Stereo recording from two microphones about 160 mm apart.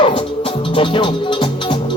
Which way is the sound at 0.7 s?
30° left (ahead or behind).